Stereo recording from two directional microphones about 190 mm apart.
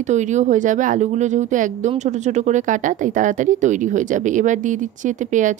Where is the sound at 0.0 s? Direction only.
40° right (ahead or behind).